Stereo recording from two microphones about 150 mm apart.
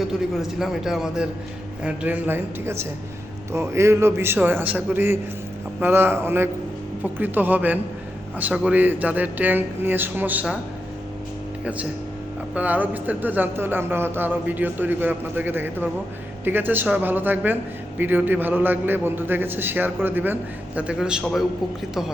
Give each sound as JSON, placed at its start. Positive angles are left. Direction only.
{"t": 0.6, "sound": "a man's voice", "side_deg": -5}
{"t": 12.5, "sound": "speech", "side_deg": -10}